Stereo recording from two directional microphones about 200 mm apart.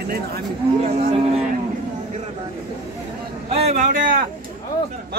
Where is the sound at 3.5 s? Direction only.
30° right (ahead or behind).